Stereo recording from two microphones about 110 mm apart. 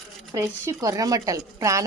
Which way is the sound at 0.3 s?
30° right (ahead or behind).